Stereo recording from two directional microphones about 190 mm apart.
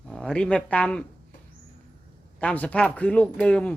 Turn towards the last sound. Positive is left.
turn(degrees=5)  # may be behind; listen again after turning